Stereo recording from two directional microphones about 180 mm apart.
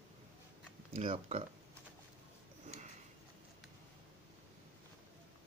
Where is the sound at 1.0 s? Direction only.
35° right (ahead or behind).